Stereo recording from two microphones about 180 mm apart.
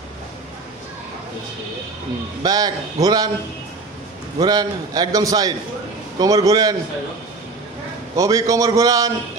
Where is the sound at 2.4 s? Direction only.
20° right (ahead or behind).